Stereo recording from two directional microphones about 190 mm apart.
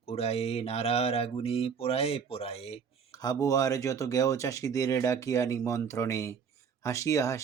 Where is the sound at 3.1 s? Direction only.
20° left (ahead or behind).